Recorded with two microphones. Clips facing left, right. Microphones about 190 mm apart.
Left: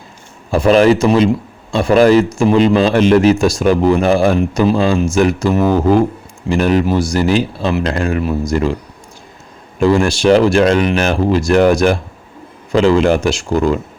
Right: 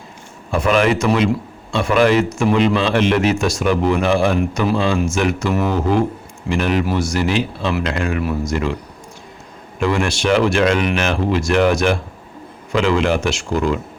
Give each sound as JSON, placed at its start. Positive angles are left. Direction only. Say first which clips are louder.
{"t": 0.5, "sound": "a man's voice", "louder": "left 6 dB", "side_deg": 35}
{"t": 9.8, "sound": "a man's voice", "louder": "left 7 dB", "side_deg": 35}